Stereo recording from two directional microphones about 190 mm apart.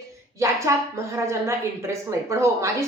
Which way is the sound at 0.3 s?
15° right (ahead or behind).